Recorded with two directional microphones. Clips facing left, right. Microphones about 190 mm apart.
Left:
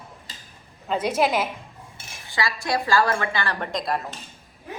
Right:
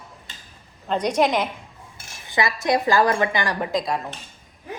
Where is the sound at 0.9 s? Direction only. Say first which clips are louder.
Right 2 dB; 5° left (ahead or behind).